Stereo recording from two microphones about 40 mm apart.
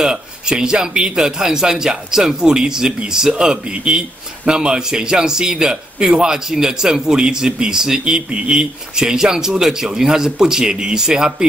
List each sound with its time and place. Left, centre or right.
0.0 s a man's voice: centre